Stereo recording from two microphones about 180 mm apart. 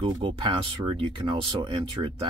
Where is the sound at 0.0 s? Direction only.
30° right (ahead or behind).